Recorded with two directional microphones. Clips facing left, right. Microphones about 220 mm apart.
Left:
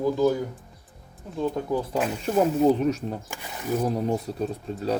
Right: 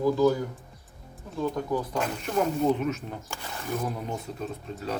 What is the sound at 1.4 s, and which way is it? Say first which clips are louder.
Speech: left 2 dB; 30° left (ahead or behind).